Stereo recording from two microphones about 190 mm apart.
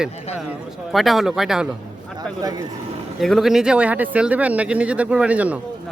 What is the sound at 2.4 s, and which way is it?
Speech, 20° right (ahead or behind).